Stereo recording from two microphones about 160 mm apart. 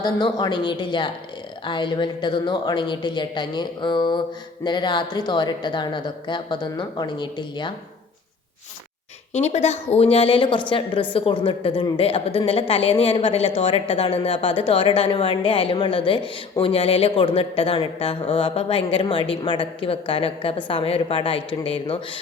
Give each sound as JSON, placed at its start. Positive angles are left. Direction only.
{"t": 0.0, "sound": "a woman's voice", "side_deg": 25}
{"t": 9.3, "sound": "a woman's voice", "side_deg": 45}